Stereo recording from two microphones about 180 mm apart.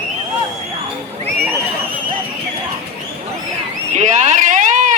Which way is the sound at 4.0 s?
40° right (ahead or behind).